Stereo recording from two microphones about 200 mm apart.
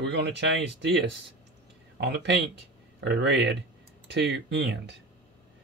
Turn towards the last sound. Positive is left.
turn(degrees=-60)  # may be behind; listen again after turning